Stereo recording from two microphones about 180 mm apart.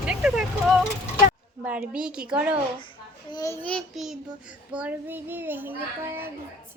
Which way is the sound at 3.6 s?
Centre (ahead or behind).